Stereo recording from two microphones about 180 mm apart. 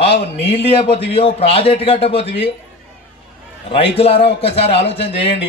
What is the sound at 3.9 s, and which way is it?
A man's voice, 35° left (ahead or behind).